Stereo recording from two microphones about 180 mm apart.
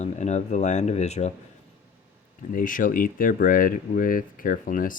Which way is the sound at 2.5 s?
50° left (ahead or behind).